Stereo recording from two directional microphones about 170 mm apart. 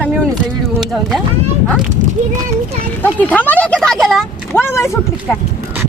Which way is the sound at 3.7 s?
Centre (ahead or behind).